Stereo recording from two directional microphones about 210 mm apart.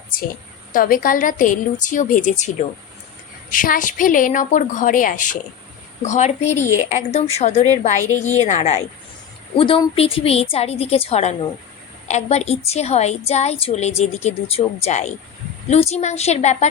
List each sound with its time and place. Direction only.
0.7 s a woman's voice: 40° left (ahead or behind)
3.5 s a woman's voice: 40° left (ahead or behind)